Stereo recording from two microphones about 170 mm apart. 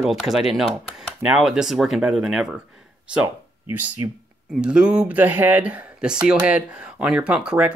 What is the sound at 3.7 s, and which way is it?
Speech, 10° right (ahead or behind).